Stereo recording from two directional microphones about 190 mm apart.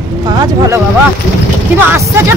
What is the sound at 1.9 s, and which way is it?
Speech, 15° right (ahead or behind).